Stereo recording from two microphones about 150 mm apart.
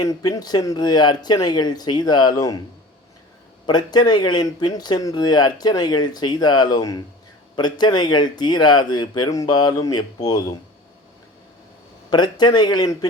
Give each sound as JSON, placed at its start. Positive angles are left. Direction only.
{"t": 0.0, "sound": "speech", "side_deg": 25}
{"t": 3.7, "sound": "speech", "side_deg": 30}
{"t": 12.1, "sound": "speech", "side_deg": 30}